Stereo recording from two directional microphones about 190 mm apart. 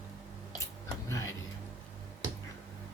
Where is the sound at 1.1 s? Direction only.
15° left (ahead or behind).